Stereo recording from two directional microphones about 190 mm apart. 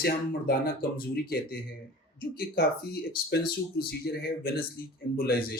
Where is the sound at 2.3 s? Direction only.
50° left (ahead or behind).